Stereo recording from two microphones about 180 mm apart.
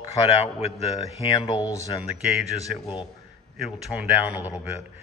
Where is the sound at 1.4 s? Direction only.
20° left (ahead or behind).